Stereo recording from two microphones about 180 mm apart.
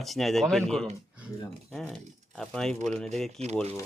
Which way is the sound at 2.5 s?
5° left (ahead or behind).